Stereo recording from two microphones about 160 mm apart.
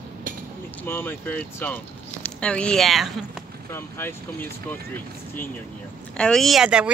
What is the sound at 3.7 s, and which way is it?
Speech, 15° left (ahead or behind).